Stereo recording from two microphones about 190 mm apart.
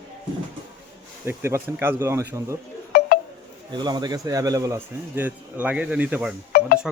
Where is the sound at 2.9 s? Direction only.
55° left (ahead or behind).